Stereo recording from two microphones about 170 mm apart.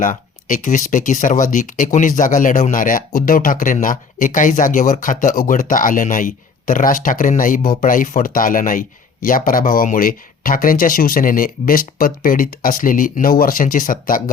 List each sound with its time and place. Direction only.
0.0 s speech: 50° left (ahead or behind)